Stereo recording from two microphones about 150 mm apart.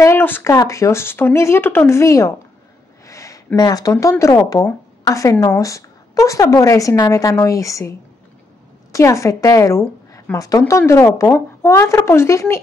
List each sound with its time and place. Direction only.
0.0 s speech: 15° left (ahead or behind)
3.1 s a sound: 20° left (ahead or behind)
3.5 s speech: 25° left (ahead or behind)
8.9 s a woman's voice: 20° left (ahead or behind)